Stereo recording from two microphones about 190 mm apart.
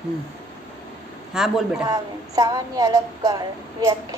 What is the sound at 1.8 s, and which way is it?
Child singing, 20° right (ahead or behind).